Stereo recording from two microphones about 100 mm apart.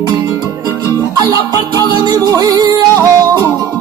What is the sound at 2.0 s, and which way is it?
Music, 45° right (ahead or behind).